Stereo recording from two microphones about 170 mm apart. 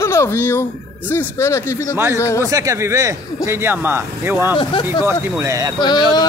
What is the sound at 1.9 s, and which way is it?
Speech, 15° right (ahead or behind).